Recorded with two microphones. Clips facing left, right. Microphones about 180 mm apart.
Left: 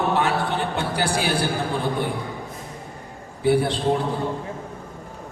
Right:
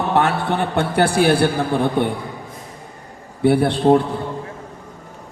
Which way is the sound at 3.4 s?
60° right (ahead or behind).